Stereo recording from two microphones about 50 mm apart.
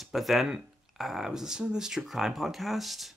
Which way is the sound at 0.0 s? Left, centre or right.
Centre.